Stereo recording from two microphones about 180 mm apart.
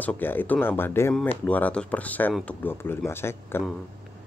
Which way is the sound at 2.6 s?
10° left (ahead or behind).